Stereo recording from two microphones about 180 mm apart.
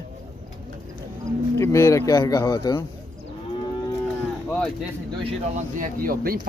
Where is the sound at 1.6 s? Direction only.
15° left (ahead or behind).